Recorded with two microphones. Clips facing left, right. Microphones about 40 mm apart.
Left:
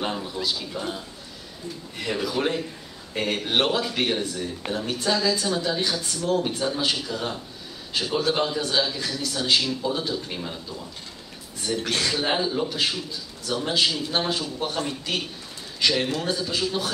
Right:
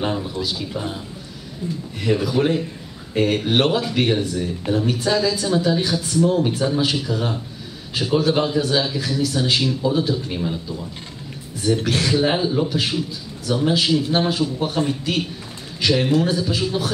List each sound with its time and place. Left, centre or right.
0.0 s a woman's voice: centre
14.8 s a man's voice: centre
15.8 s a woman's voice: centre